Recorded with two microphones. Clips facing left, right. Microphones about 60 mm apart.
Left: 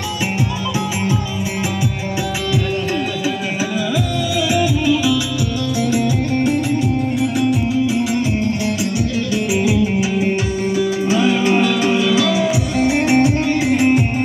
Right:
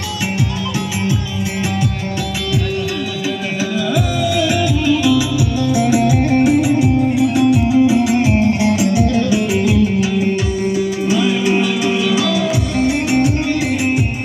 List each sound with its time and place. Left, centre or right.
3.9 s music: centre
5.8 s music: right
7.7 s music: right
9.5 s music: centre
11.1 s music: left